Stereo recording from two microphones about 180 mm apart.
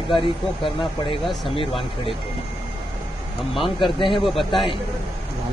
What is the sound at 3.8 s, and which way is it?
Speech, 25° left (ahead or behind).